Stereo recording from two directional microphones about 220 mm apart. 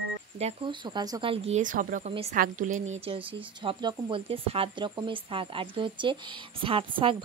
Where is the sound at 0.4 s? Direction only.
25° right (ahead or behind).